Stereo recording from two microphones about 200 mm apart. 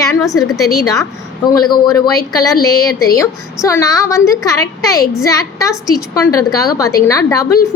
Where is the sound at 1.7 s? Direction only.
20° left (ahead or behind).